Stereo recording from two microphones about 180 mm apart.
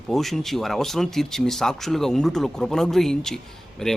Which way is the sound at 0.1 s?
Centre (ahead or behind).